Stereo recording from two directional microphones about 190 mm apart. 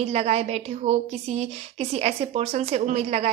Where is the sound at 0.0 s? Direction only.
35° right (ahead or behind).